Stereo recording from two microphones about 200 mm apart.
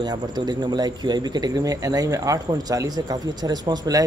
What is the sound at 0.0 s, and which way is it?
A man's voice, 20° right (ahead or behind).